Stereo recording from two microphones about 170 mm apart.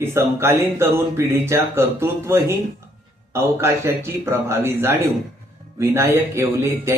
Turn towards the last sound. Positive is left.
turn(degrees=-15)  # may be behind; listen again after turning